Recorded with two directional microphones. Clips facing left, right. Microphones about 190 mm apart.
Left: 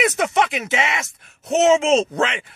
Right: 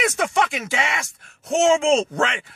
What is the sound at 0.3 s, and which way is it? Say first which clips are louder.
Speech: left 2 dB; 20° left (ahead or behind).